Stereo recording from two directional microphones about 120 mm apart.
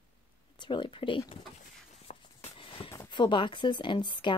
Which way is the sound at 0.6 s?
40° left (ahead or behind).